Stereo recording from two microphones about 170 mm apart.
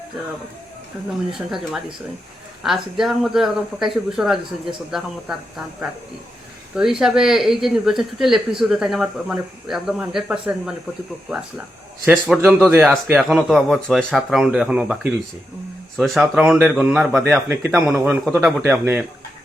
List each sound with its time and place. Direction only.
1.3 s speech: centre (ahead or behind)
7.0 s speech: centre (ahead or behind)
17.7 s a man's voice: 20° right (ahead or behind)